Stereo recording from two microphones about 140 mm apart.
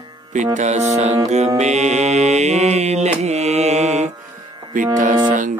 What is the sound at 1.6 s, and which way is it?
Mantra, 55° right (ahead or behind).